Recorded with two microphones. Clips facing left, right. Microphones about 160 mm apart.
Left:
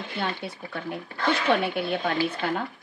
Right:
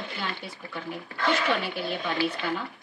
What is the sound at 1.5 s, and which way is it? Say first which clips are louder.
Speech: left 4 dB; 55° left (ahead or behind).